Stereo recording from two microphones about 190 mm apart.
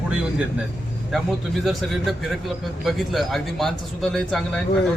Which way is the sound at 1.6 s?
Centre (ahead or behind).